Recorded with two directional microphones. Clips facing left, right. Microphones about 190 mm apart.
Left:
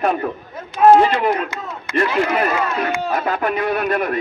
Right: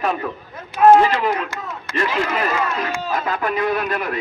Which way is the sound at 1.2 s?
45° left (ahead or behind).